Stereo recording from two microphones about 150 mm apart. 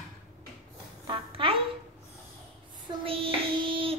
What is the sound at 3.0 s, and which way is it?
Child singing, 35° right (ahead or behind).